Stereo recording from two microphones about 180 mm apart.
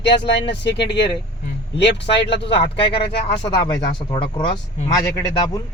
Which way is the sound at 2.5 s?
30° left (ahead or behind).